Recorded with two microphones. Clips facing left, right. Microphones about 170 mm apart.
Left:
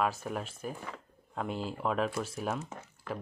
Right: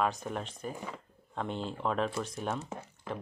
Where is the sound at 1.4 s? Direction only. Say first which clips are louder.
Even; 5° left (ahead or behind).